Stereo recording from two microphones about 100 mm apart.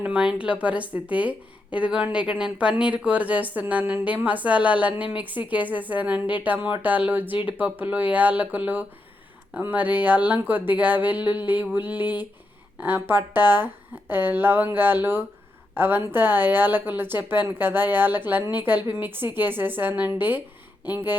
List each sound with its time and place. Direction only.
0.0 s a woman's voice: 10° right (ahead or behind)